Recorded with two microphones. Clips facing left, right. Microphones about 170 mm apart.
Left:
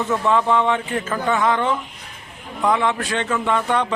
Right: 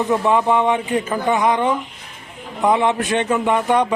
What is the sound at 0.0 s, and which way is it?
A man's voice, 15° right (ahead or behind).